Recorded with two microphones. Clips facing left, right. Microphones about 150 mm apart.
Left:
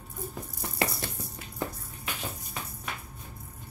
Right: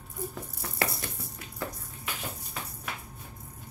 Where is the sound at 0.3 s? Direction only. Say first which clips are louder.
Left 1 dB; 20° left (ahead or behind).